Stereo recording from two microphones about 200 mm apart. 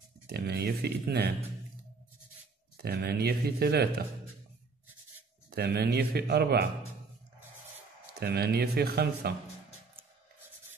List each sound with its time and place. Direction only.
0.3 s speech: 50° right (ahead or behind)
2.8 s speech: 50° right (ahead or behind)
5.5 s speech: 55° right (ahead or behind)
8.1 s speech: 50° right (ahead or behind)